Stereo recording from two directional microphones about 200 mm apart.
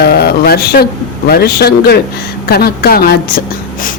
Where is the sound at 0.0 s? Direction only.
50° left (ahead or behind).